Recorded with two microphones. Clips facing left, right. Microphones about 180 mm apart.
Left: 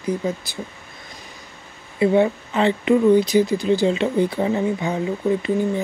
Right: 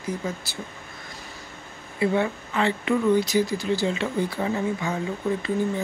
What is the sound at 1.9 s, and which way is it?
Speech, 25° left (ahead or behind).